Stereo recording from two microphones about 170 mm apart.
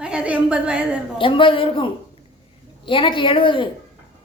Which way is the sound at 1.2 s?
30° left (ahead or behind).